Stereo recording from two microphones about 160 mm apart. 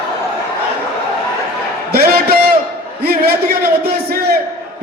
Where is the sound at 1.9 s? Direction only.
75° right (ahead or behind).